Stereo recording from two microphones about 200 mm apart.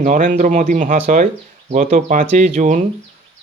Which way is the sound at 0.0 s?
40° right (ahead or behind).